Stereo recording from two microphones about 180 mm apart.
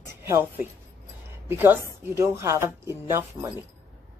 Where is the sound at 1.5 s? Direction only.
10° right (ahead or behind).